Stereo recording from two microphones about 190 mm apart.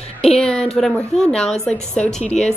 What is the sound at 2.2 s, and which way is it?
Speech, 35° left (ahead or behind).